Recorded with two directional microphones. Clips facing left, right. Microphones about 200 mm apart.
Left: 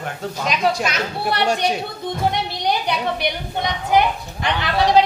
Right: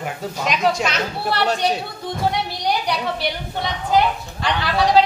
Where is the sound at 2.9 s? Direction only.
20° left (ahead or behind).